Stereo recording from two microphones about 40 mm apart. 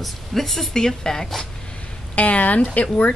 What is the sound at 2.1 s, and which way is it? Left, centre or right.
Speech, left.